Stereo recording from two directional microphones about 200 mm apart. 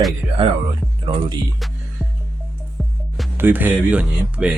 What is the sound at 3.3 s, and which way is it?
Speech, 10° right (ahead or behind).